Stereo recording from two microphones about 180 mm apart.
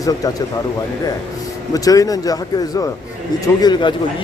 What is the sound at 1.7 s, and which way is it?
Speech, 20° left (ahead or behind).